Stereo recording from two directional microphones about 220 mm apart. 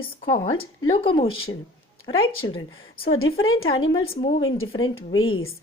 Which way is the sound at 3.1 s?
65° left (ahead or behind).